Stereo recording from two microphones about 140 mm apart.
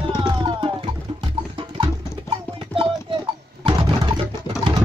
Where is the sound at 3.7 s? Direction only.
35° right (ahead or behind).